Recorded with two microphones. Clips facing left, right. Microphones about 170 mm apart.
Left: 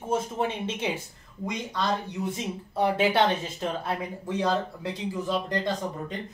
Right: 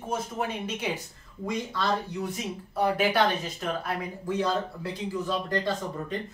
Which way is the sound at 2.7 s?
25° left (ahead or behind).